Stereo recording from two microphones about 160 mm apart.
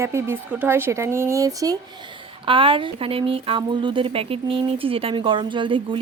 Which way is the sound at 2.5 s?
35° right (ahead or behind).